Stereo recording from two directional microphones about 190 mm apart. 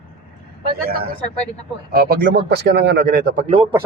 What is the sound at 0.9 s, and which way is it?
A man's voice, 50° right (ahead or behind).